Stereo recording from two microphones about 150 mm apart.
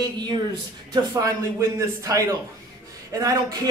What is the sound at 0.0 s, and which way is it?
Speech, 25° right (ahead or behind).